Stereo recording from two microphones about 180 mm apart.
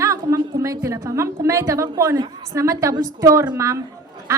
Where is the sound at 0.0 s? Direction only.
15° right (ahead or behind).